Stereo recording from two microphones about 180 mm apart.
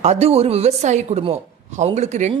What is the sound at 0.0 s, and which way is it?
Speech, 35° right (ahead or behind).